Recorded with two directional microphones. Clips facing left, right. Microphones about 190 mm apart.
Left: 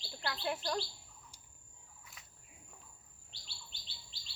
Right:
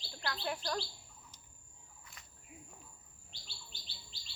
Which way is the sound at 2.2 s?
Centre (ahead or behind).